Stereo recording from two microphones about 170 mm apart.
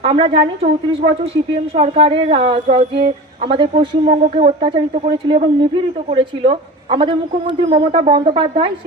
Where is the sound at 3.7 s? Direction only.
45° right (ahead or behind).